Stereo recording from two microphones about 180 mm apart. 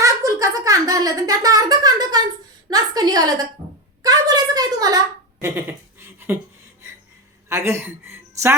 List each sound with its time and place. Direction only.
0.0 s a sound: 20° right (ahead or behind)
4.0 s speech: 20° right (ahead or behind)
7.5 s speech: 15° right (ahead or behind)